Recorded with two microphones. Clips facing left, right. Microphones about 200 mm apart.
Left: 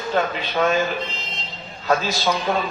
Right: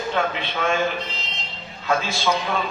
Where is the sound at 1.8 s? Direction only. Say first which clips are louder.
Left 2 dB; 40° left (ahead or behind).